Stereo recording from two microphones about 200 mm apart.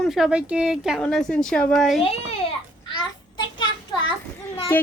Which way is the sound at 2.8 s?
20° left (ahead or behind).